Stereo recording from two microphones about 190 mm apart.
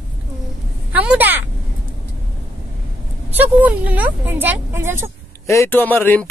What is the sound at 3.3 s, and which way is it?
Speech, 10° right (ahead or behind).